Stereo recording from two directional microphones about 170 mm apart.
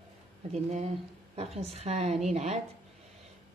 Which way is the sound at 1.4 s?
40° right (ahead or behind).